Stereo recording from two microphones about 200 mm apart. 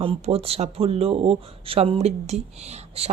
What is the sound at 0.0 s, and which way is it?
A woman's voice, 25° right (ahead or behind).